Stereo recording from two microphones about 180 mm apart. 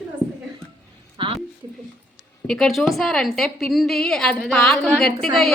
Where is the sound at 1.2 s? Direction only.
30° right (ahead or behind).